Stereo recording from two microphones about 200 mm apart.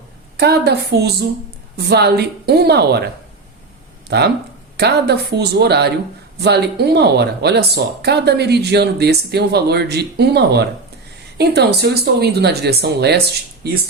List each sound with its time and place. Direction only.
0.3 s a woman's voice: 55° right (ahead or behind)
4.1 s speech: 55° right (ahead or behind)